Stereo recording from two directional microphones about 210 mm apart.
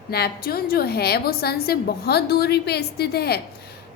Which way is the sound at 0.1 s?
45° left (ahead or behind).